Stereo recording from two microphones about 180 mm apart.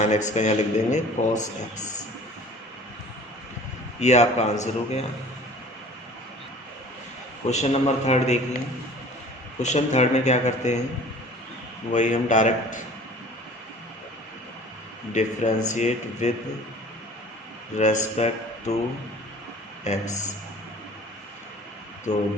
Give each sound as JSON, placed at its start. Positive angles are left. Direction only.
{"t": 0.0, "sound": "speech", "side_deg": 40}
{"t": 4.0, "sound": "speech", "side_deg": 40}
{"t": 7.4, "sound": "speech", "side_deg": 40}
{"t": 9.6, "sound": "speech", "side_deg": 40}
{"t": 11.9, "sound": "a man's voice", "side_deg": 45}
{"t": 15.1, "sound": "speech", "side_deg": 40}
{"t": 17.7, "sound": "speech", "side_deg": 40}
{"t": 19.8, "sound": "speech", "side_deg": 40}
{"t": 22.1, "sound": "speech", "side_deg": 40}